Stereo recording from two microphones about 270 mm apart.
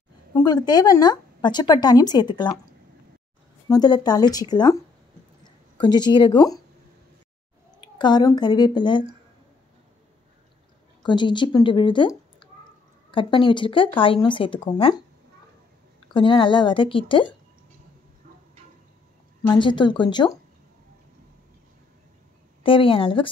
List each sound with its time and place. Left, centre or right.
0.3 s speech: centre
7.8 s a woman's voice: centre
11.0 s a woman's voice: centre
16.1 s speech: centre
19.5 s speech: centre
22.6 s speech: centre